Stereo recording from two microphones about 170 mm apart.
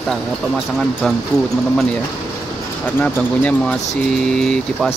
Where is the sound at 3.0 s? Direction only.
5° left (ahead or behind).